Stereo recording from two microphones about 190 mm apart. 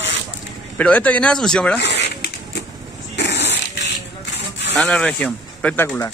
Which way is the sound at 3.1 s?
65° left (ahead or behind).